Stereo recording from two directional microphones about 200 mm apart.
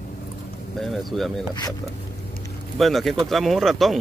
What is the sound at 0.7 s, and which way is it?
Boat, centre (ahead or behind).